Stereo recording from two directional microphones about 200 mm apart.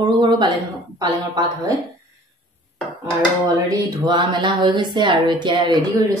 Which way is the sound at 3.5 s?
20° right (ahead or behind).